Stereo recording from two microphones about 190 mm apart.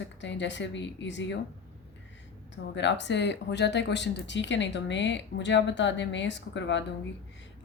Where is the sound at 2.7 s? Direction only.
70° left (ahead or behind).